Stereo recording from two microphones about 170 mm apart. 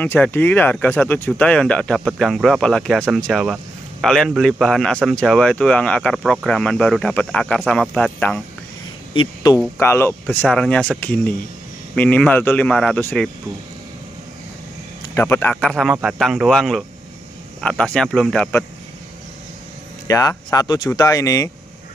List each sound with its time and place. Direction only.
0.0 s speech: 10° left (ahead or behind)
9.1 s speech: 25° left (ahead or behind)
9.8 s speech: 15° left (ahead or behind)
15.1 s speech: 15° left (ahead or behind)
15.5 s speech: centre (ahead or behind)
20.1 s speech: 20° left (ahead or behind)